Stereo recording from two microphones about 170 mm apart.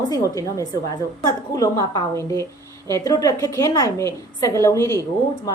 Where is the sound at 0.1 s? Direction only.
20° left (ahead or behind).